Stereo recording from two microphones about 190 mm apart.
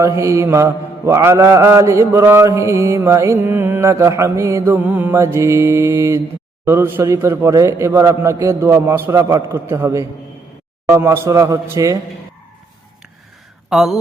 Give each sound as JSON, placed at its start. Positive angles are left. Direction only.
{"t": 0.0, "sound": "mantra", "side_deg": -15}
{"t": 13.7, "sound": "speech", "side_deg": 0}